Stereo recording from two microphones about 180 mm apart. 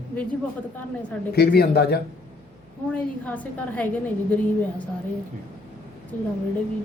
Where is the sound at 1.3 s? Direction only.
65° left (ahead or behind).